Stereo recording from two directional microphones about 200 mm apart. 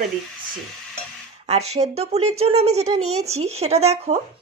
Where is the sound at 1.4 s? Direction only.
30° right (ahead or behind).